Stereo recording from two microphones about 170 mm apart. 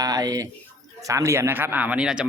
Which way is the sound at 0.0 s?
20° right (ahead or behind).